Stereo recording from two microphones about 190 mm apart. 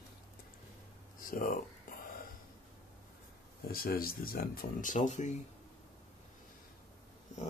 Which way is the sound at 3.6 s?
50° left (ahead or behind).